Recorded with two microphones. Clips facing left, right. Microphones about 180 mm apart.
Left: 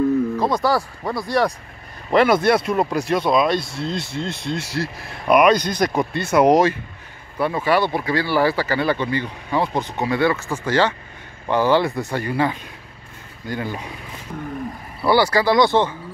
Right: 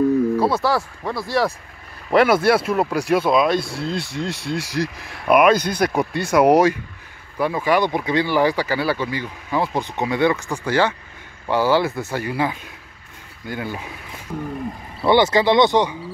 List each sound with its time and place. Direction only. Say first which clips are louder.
0.4 s speech: even; 5° right (ahead or behind)
15.0 s speech: right 1 dB; 20° right (ahead or behind)